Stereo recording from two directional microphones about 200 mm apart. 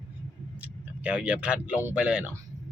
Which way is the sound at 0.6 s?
5° right (ahead or behind).